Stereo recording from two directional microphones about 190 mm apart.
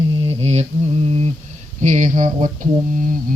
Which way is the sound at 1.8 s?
40° right (ahead or behind).